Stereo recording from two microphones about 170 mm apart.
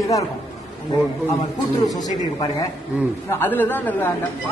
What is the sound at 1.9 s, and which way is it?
Speech, 20° left (ahead or behind).